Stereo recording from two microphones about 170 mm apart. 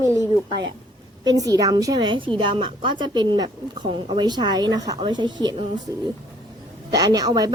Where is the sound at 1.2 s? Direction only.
20° right (ahead or behind).